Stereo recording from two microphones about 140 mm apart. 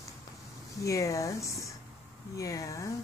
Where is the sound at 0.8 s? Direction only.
20° left (ahead or behind).